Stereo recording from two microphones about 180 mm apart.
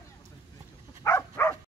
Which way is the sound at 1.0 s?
15° left (ahead or behind).